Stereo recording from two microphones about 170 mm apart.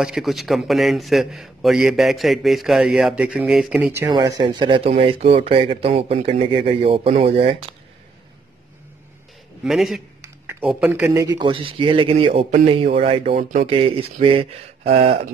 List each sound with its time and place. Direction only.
0.0 s a man's voice: centre (ahead or behind)
3.9 s speech: 20° right (ahead or behind)
9.7 s a man's voice: centre (ahead or behind)
11.1 s speech: 25° right (ahead or behind)
13.4 s speech: 50° right (ahead or behind)
13.7 s speech: 30° right (ahead or behind)